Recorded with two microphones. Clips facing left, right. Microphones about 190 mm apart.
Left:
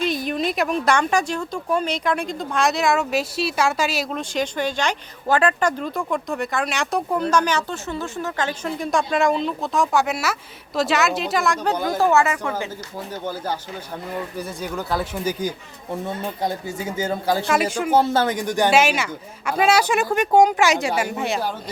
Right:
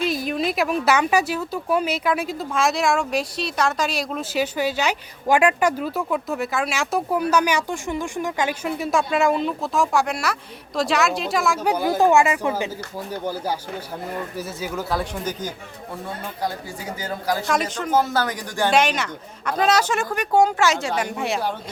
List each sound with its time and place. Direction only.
0.0 s a woman's voice: centre (ahead or behind)
16.4 s speech: 25° left (ahead or behind)
17.4 s a woman's voice: 5° left (ahead or behind)
17.9 s speech: 25° left (ahead or behind)
18.7 s a woman's voice: 5° left (ahead or behind)